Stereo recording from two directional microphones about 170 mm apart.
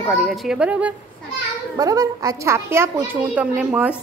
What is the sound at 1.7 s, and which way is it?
A woman's voice, 20° right (ahead or behind).